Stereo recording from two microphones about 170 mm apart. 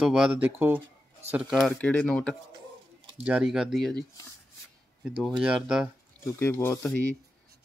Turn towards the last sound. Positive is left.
turn(degrees=15)  # may be behind; listen again after turning